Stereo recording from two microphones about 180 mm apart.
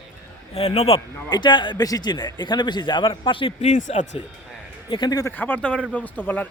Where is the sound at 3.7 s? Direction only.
40° left (ahead or behind).